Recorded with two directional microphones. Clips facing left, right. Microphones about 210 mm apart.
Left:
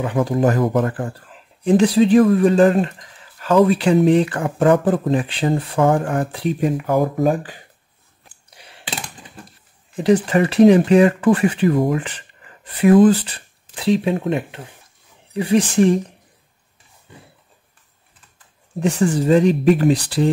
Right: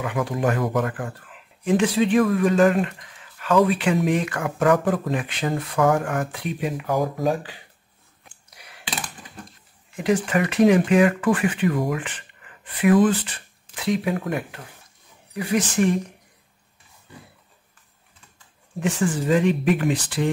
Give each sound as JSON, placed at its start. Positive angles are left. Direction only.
{"t": 0.0, "sound": "speech", "side_deg": 35}
{"t": 6.9, "sound": "speech", "side_deg": 55}
{"t": 8.5, "sound": "a sound", "side_deg": 30}
{"t": 9.9, "sound": "speech", "side_deg": 35}
{"t": 18.8, "sound": "speech", "side_deg": 35}